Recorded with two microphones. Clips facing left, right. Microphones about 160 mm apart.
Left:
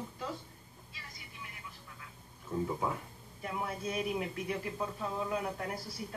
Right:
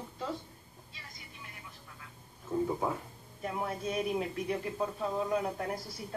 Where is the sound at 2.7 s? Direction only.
20° right (ahead or behind).